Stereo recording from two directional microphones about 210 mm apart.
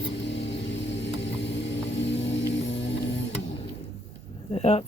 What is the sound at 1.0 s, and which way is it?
Vehicle, 55° left (ahead or behind).